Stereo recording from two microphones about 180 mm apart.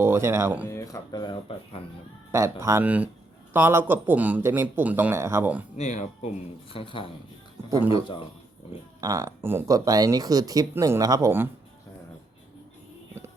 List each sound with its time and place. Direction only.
0.0 s speech: 15° right (ahead or behind)
0.7 s speech: 20° left (ahead or behind)
2.3 s speech: 15° right (ahead or behind)
5.7 s speech: 40° left (ahead or behind)
6.7 s speech: 30° left (ahead or behind)
9.0 s speech: 20° right (ahead or behind)